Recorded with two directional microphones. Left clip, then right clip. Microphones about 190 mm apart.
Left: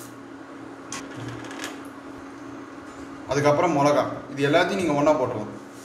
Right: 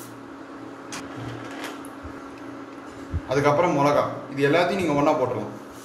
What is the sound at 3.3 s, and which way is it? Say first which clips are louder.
A man's voice: even; centre (ahead or behind).